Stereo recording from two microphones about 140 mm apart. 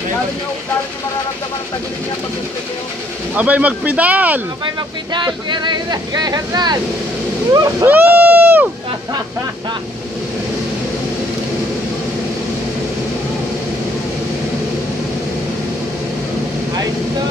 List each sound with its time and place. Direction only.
3.3 s speech: 10° right (ahead or behind)
5.1 s speech: 35° right (ahead or behind)
7.9 s speech: 15° right (ahead or behind)